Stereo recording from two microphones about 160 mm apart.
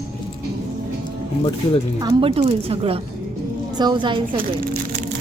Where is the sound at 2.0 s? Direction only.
35° right (ahead or behind).